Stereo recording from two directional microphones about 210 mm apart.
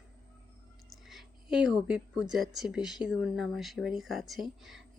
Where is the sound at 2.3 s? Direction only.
Centre (ahead or behind).